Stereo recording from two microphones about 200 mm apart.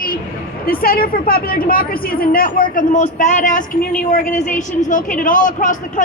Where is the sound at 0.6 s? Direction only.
45° left (ahead or behind).